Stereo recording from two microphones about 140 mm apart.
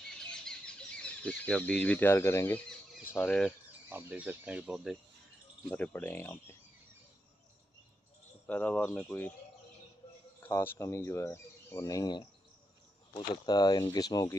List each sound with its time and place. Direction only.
0.1 s a sound: 5° left (ahead or behind)
3.1 s speech: 10° left (ahead or behind)
3.9 s speech: 10° right (ahead or behind)
5.7 s speech: 15° left (ahead or behind)
8.5 s speech: 10° left (ahead or behind)
10.4 s speech: 15° left (ahead or behind)